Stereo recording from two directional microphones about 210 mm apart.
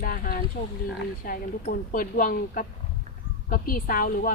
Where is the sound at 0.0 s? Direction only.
45° left (ahead or behind).